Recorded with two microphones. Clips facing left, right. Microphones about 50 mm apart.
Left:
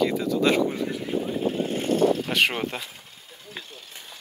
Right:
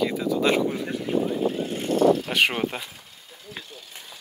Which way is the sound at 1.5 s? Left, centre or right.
Left.